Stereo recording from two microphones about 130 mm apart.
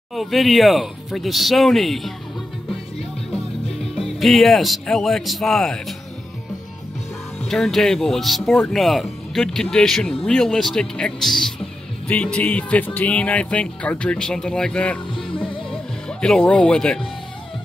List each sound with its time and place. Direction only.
0.1 s speech: centre (ahead or behind)
4.2 s speech: centre (ahead or behind)
7.4 s speech: 5° left (ahead or behind)
15.1 s music: 40° left (ahead or behind)
15.7 s speech: 5° left (ahead or behind)